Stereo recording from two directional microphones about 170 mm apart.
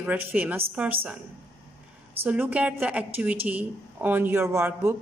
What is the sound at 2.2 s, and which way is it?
A woman's voice, 10° right (ahead or behind).